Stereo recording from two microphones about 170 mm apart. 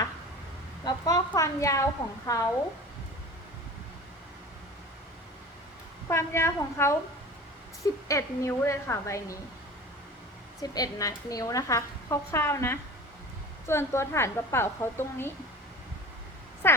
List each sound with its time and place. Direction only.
0.9 s a woman's voice: 25° left (ahead or behind)
6.1 s a woman's voice: 15° left (ahead or behind)
8.0 s a woman's voice: 20° left (ahead or behind)
10.6 s a woman's voice: 20° left (ahead or behind)
16.6 s a sound: 15° left (ahead or behind)